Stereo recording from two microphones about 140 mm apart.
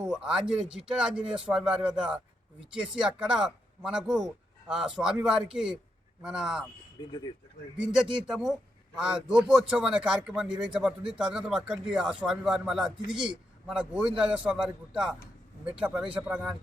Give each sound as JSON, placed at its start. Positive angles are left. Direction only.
{"t": 0.0, "sound": "a man's voice", "side_deg": -5}
{"t": 7.0, "sound": "speech", "side_deg": 35}
{"t": 7.8, "sound": "a man's voice", "side_deg": -5}